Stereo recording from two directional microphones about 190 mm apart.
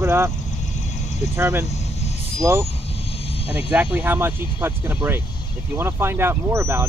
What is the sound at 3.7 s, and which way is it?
Speech, 10° right (ahead or behind).